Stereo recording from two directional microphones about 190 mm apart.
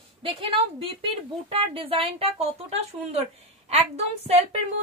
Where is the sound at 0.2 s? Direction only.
30° right (ahead or behind).